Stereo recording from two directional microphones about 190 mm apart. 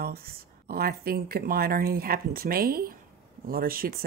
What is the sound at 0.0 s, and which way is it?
Speech, 50° right (ahead or behind).